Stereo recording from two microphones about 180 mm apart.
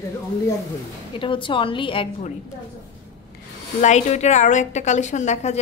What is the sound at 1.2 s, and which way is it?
Speech, 30° left (ahead or behind).